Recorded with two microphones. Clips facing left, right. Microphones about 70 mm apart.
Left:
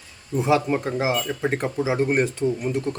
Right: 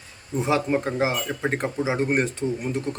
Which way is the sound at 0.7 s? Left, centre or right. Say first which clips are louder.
Even; centre.